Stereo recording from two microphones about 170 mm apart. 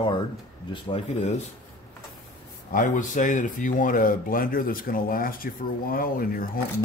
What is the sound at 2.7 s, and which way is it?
Speech, 50° left (ahead or behind).